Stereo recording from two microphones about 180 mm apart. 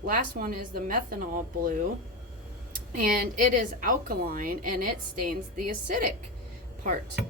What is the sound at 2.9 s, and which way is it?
Speech, 50° right (ahead or behind).